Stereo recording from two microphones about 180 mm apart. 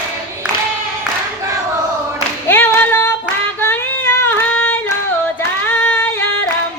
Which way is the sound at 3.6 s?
10° left (ahead or behind).